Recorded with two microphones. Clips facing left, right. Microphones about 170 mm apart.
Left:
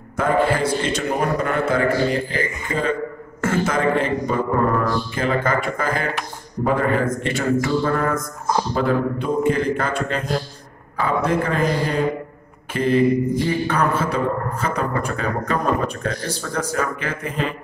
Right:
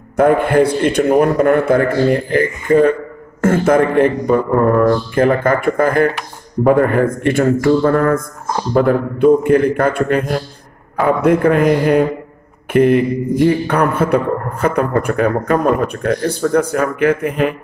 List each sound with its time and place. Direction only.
0.2 s a man's voice: 55° right (ahead or behind)